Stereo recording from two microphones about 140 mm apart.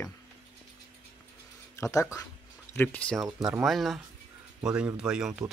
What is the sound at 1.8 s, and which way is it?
Speech, 20° left (ahead or behind).